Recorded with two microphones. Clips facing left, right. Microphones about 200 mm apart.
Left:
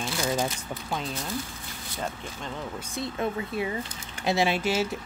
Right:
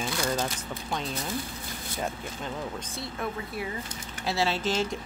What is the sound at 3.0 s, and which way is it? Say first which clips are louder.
Speech: left 6 dB; 25° left (ahead or behind).